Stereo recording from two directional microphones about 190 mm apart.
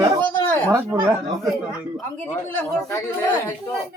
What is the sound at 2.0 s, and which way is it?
Speech, 10° left (ahead or behind).